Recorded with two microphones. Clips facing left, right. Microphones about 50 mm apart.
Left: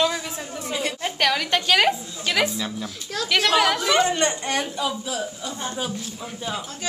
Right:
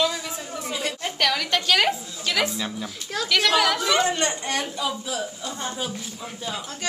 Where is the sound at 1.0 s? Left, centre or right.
Centre.